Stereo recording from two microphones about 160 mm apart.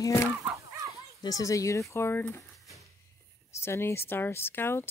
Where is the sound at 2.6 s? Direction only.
Centre (ahead or behind).